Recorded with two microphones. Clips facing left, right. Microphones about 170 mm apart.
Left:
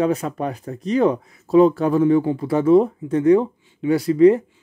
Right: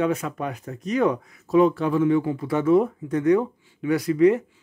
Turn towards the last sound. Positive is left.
turn(degrees=30)  # may be behind; listen again after turning